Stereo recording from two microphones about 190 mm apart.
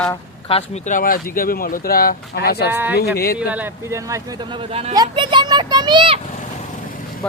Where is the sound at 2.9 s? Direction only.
55° left (ahead or behind).